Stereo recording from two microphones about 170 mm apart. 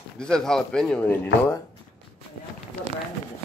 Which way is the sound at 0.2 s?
5° left (ahead or behind).